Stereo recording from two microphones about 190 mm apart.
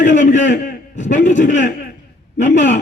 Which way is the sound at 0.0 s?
40° left (ahead or behind).